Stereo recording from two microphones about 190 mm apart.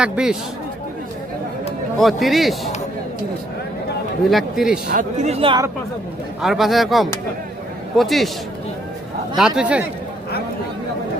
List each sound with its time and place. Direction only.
0.0 s speech: 5° right (ahead or behind)
2.0 s speech: centre (ahead or behind)
4.3 s speech: centre (ahead or behind)
5.2 s speech: 30° right (ahead or behind)
6.4 s speech: centre (ahead or behind)
9.4 s speech: 5° right (ahead or behind)